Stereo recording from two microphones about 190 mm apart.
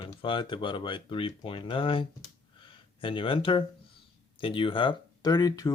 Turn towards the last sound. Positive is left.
turn(degrees=20)  # may be behind; listen again after turning